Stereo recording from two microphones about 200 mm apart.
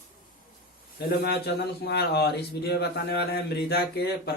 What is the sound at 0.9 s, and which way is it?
A man's voice, 55° left (ahead or behind).